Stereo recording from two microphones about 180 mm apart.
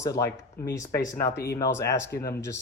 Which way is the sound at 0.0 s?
15° left (ahead or behind).